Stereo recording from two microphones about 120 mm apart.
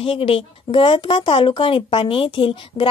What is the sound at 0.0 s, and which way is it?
Speech, 45° left (ahead or behind).